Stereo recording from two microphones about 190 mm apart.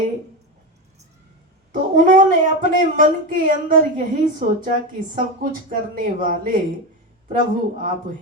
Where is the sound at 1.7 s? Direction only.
45° right (ahead or behind).